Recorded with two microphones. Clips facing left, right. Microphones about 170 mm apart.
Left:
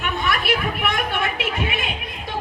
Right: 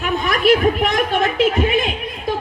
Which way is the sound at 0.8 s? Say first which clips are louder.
Right 6 dB; 40° right (ahead or behind).